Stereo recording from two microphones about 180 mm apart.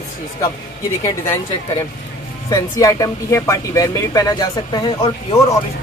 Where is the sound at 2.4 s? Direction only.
20° left (ahead or behind).